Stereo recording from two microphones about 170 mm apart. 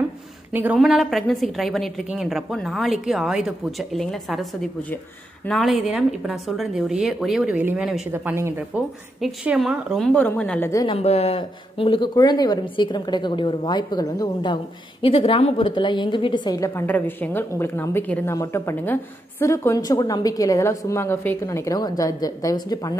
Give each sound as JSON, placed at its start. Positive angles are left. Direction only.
{"t": 0.5, "sound": "a woman's voice", "side_deg": -10}
{"t": 0.7, "sound": "a woman's voice", "side_deg": 0}
{"t": 9.2, "sound": "a woman's voice", "side_deg": -5}
{"t": 10.9, "sound": "speech", "side_deg": 40}